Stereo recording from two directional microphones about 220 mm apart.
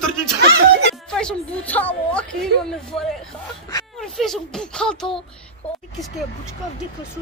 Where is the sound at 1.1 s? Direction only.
5° left (ahead or behind).